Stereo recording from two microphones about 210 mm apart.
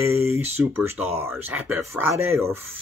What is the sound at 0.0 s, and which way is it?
Speech, 10° right (ahead or behind).